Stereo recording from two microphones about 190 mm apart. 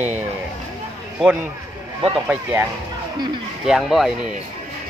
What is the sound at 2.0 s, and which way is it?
Speech, centre (ahead or behind).